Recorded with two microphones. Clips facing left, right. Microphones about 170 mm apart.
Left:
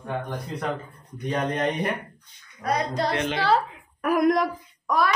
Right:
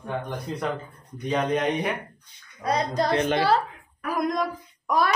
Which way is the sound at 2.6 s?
35° right (ahead or behind).